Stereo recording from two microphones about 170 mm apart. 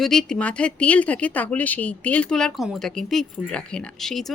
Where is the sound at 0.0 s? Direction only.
5° left (ahead or behind).